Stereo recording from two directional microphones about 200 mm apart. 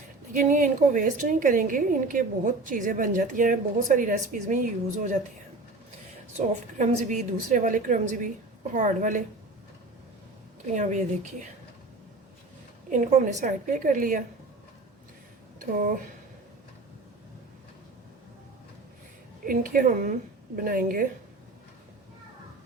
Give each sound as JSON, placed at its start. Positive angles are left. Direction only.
{"t": 0.3, "sound": "a woman's voice", "side_deg": -40}
{"t": 6.7, "sound": "a woman's voice", "side_deg": -40}
{"t": 10.8, "sound": "a woman's voice", "side_deg": -40}
{"t": 12.9, "sound": "a woman's voice", "side_deg": -40}
{"t": 19.5, "sound": "a woman's voice", "side_deg": -45}